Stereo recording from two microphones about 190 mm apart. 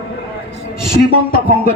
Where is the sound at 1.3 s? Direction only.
50° left (ahead or behind).